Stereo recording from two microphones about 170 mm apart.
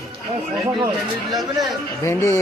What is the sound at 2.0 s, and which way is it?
Speech, 15° left (ahead or behind).